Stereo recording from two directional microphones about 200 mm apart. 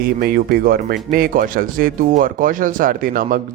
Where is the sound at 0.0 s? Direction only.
50° right (ahead or behind).